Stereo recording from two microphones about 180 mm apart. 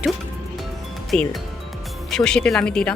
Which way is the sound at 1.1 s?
Centre (ahead or behind).